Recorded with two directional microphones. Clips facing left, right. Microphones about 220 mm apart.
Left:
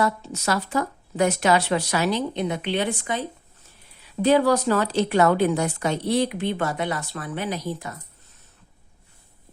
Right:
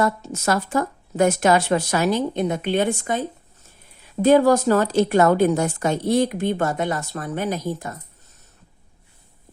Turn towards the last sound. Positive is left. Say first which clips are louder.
# right 3 dB
turn(degrees=-45)  # may be behind; listen again after turning